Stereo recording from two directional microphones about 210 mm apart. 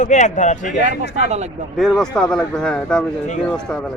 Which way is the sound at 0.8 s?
35° right (ahead or behind).